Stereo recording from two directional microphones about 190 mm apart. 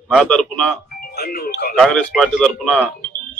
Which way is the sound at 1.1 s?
55° left (ahead or behind).